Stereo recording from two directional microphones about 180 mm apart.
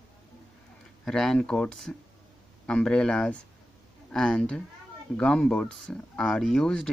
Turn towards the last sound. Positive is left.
turn(degrees=5)  # may be behind; listen again after turning